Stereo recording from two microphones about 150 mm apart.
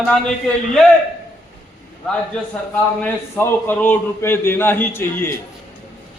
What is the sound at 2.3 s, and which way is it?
A man's voice, 5° left (ahead or behind).